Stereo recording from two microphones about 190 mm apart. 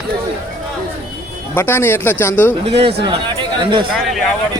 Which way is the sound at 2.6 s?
30° right (ahead or behind).